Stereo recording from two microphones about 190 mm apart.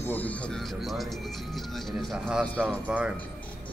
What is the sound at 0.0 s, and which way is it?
Speech, 10° left (ahead or behind).